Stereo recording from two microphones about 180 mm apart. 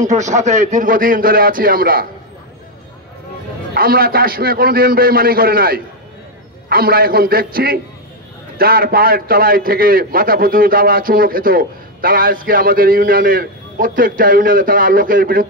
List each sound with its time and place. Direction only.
0.0 s a man's voice: 40° right (ahead or behind)
3.7 s a man's voice: 55° right (ahead or behind)